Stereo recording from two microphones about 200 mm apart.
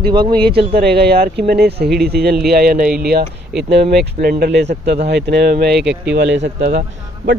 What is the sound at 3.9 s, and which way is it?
Speech, 50° right (ahead or behind).